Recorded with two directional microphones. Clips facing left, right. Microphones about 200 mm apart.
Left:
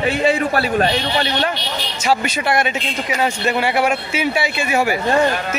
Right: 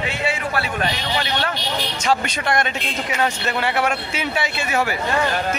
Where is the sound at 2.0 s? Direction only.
5° left (ahead or behind).